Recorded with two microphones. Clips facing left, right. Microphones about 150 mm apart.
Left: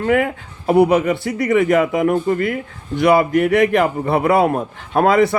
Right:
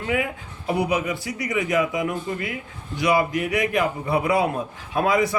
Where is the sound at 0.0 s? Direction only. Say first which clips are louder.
Left 8 dB; 60° left (ahead or behind).